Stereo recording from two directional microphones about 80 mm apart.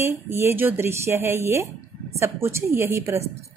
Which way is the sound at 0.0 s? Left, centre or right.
Right.